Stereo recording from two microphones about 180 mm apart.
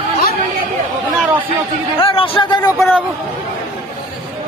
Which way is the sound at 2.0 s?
30° left (ahead or behind).